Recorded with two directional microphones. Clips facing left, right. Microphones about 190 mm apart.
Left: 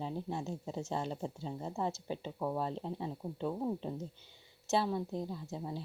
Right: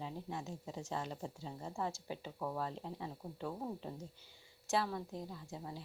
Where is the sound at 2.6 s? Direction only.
30° left (ahead or behind).